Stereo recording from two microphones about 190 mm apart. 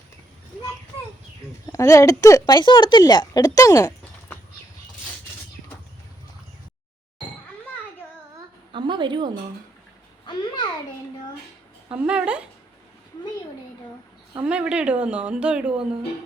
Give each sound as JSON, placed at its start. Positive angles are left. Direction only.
{"t": 1.7, "sound": "a woman's voice", "side_deg": 15}
{"t": 8.7, "sound": "a sound", "side_deg": -25}
{"t": 11.9, "sound": "speech", "side_deg": -5}
{"t": 14.4, "sound": "speech", "side_deg": -5}